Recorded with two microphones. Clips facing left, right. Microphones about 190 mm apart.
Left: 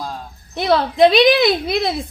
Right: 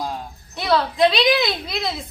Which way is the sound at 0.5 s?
50° left (ahead or behind).